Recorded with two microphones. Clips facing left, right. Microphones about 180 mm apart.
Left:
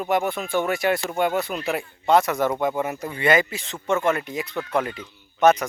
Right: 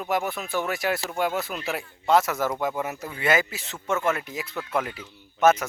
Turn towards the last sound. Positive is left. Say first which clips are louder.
# left 2 dB
turn(degrees=-5)  # may be behind; listen again after turning